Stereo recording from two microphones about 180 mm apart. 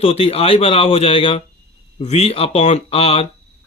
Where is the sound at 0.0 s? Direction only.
35° left (ahead or behind).